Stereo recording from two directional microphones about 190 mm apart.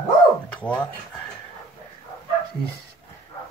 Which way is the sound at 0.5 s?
5° left (ahead or behind).